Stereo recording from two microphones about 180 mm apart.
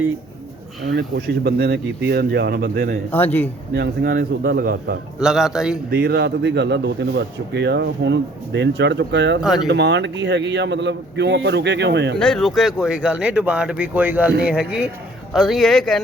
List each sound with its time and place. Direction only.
0.9 s speech: 60° right (ahead or behind)
3.1 s a man's voice: 10° left (ahead or behind)
3.8 s speech: 60° right (ahead or behind)
5.2 s speech: 5° right (ahead or behind)
5.9 s speech: 60° right (ahead or behind)
12.2 s speech: centre (ahead or behind)